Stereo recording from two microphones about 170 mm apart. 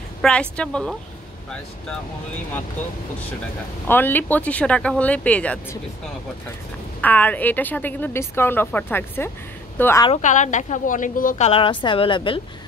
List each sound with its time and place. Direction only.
0.2 s speech: 5° left (ahead or behind)
3.8 s a woman's voice: 10° left (ahead or behind)
7.0 s a woman's voice: 10° left (ahead or behind)
10.1 s a woman's voice: 45° left (ahead or behind); by 12.4 s 30° left (ahead or behind)